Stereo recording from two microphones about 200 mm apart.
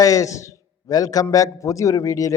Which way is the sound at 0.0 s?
15° left (ahead or behind).